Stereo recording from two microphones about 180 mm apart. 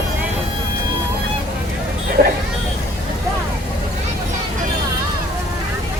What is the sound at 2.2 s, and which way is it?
Speech, 55° right (ahead or behind).